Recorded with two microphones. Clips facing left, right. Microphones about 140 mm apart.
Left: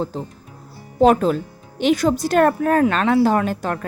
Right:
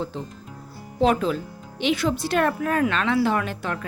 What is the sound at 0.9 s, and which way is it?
Speech, 45° left (ahead or behind).